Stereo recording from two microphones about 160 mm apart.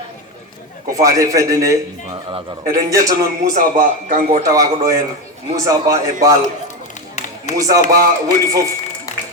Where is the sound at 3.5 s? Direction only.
55° right (ahead or behind).